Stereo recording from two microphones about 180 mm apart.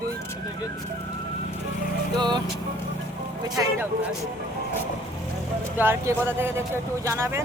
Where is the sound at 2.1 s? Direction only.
25° right (ahead or behind).